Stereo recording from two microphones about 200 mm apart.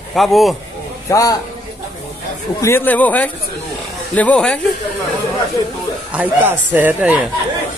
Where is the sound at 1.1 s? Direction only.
15° left (ahead or behind).